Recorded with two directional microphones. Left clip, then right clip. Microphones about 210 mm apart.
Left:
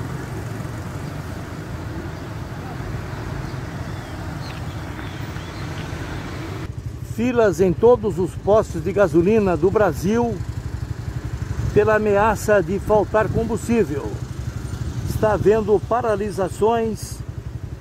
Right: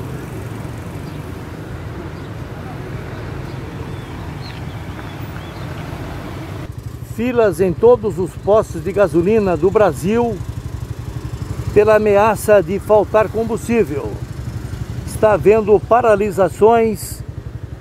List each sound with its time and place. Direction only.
7.2 s speech: 5° left (ahead or behind)
11.7 s speech: 5° right (ahead or behind)
15.1 s speech: centre (ahead or behind)